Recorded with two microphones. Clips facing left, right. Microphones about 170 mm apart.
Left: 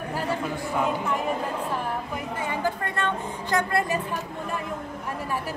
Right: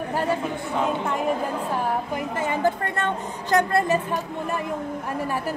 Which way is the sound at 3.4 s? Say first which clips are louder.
Right 5 dB; 45° right (ahead or behind).